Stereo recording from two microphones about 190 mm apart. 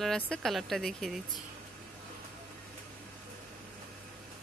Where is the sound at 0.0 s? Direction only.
Centre (ahead or behind).